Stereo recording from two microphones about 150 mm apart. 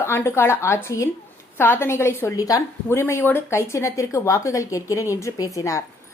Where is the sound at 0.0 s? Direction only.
15° left (ahead or behind).